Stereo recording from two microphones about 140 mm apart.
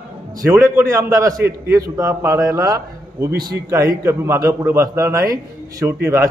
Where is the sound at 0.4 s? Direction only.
20° right (ahead or behind).